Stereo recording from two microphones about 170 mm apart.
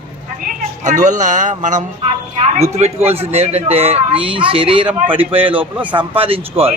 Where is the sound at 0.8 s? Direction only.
45° right (ahead or behind).